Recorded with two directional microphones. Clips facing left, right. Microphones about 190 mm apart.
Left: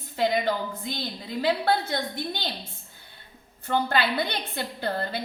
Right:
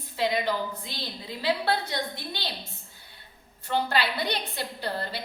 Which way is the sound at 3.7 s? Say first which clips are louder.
Left 2 dB; 55° left (ahead or behind).